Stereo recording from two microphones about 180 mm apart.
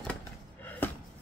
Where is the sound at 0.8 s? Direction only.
10° left (ahead or behind).